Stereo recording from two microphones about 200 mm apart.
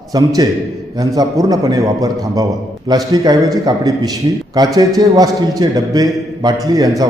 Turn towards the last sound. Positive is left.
turn(degrees=-20)  # may be behind; listen again after turning